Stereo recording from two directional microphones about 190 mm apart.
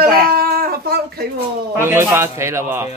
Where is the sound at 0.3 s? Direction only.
50° right (ahead or behind).